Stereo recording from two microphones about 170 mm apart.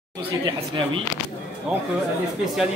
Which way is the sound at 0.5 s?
30° right (ahead or behind).